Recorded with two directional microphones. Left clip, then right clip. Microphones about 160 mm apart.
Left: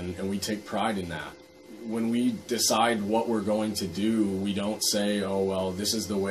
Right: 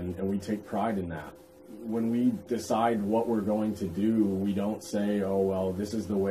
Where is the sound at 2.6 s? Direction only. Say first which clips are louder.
Left 3 dB; 10° left (ahead or behind).